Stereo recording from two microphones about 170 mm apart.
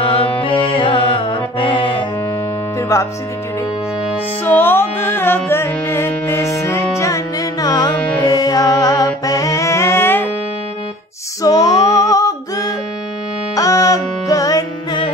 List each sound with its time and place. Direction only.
0.0 s music: 35° left (ahead or behind)
2.9 s speech: 20° left (ahead or behind)
4.5 s music: 10° left (ahead or behind)
7.0 s carnatic music: 20° left (ahead or behind)
8.2 s music: 20° left (ahead or behind)
11.4 s female singing: 20° left (ahead or behind)
13.6 s music: 20° left (ahead or behind)